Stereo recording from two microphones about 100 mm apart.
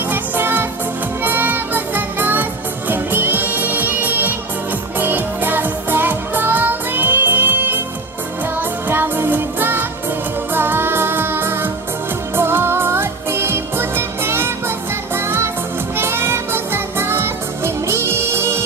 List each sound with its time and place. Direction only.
0.1 s music: 20° right (ahead or behind)
8.9 s music: 20° right (ahead or behind)